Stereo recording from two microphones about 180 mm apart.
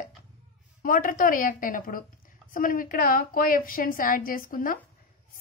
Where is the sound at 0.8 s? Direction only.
50° left (ahead or behind).